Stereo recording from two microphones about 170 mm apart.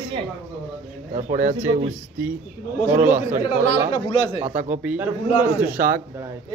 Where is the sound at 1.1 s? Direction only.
45° right (ahead or behind).